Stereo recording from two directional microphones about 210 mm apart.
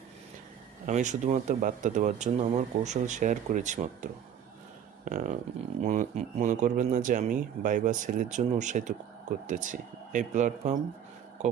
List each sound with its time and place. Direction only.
0.9 s speech: 35° right (ahead or behind)